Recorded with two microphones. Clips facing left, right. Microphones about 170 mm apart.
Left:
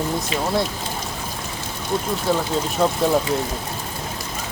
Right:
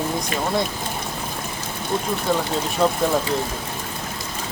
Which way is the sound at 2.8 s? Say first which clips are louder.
Right 1 dB; 5° left (ahead or behind).